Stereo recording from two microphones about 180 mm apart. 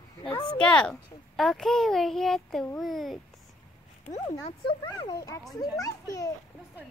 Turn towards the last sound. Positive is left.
turn(degrees=20)  # may be behind; listen again after turning